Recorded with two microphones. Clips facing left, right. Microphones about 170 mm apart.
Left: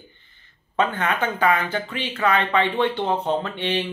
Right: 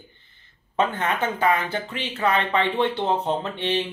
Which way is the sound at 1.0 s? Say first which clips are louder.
Left 1 dB; 25° right (ahead or behind).